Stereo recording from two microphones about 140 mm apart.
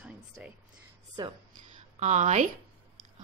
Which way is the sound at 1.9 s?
55° right (ahead or behind).